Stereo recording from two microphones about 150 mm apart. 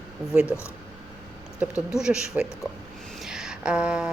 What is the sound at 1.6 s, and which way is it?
A woman's voice, 5° right (ahead or behind).